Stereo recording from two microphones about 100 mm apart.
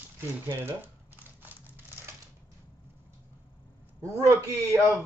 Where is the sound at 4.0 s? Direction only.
30° right (ahead or behind).